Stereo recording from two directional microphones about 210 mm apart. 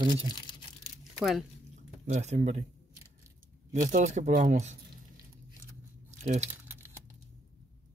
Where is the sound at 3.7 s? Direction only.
35° right (ahead or behind).